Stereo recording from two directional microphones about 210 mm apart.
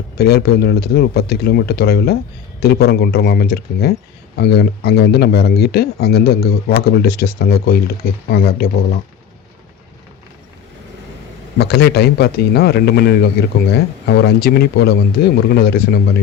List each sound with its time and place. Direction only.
0.2 s speech: 50° left (ahead or behind)
11.5 s speech: 50° left (ahead or behind)